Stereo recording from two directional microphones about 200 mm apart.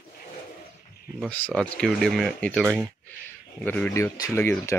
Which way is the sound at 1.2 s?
5° left (ahead or behind).